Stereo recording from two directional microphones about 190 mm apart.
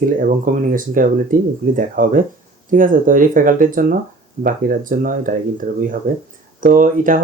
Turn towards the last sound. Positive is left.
turn(degrees=-45)  # may be behind; listen again after turning